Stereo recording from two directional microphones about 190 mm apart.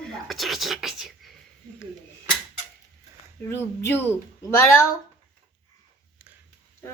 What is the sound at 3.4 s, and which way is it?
Speech, 15° left (ahead or behind).